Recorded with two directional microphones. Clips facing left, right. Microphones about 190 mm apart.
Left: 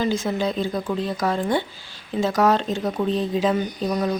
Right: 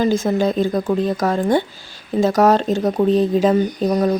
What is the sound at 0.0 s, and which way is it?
Speech, 45° right (ahead or behind).